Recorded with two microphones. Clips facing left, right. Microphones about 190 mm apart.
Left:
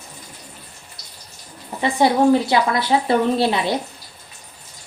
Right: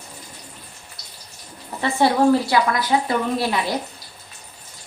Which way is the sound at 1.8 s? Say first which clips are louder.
Left 1 dB; 15° left (ahead or behind).